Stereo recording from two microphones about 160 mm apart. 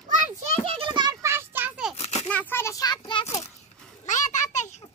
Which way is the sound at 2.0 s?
40° left (ahead or behind).